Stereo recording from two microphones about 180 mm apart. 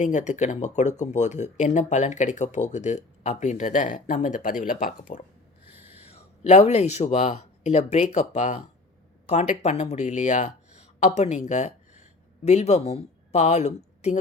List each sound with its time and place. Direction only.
0.0 s speech: 40° left (ahead or behind)
6.0 s speech: 35° left (ahead or behind)
9.6 s speech: 40° left (ahead or behind)